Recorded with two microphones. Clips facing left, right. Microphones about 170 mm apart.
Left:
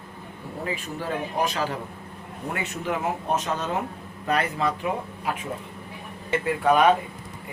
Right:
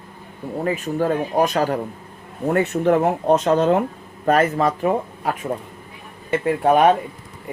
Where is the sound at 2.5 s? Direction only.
55° right (ahead or behind).